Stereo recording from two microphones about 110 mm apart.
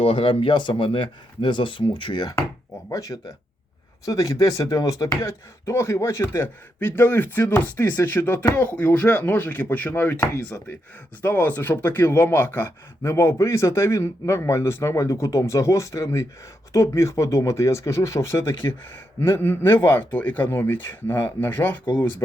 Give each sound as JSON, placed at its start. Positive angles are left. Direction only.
{"t": 0.0, "sound": "speech", "side_deg": 55}
{"t": 2.9, "sound": "speech", "side_deg": 30}
{"t": 11.2, "sound": "speech", "side_deg": 15}